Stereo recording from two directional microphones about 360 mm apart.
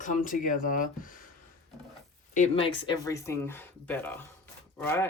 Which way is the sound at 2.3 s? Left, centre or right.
Centre.